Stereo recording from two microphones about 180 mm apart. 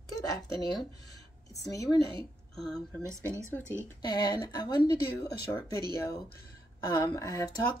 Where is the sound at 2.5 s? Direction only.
Centre (ahead or behind).